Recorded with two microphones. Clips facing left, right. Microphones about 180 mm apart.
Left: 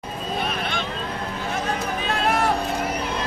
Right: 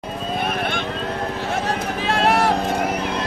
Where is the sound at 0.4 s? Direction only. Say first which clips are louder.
Right 3 dB; 55° right (ahead or behind).